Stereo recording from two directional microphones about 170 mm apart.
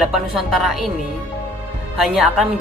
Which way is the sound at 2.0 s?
5° right (ahead or behind).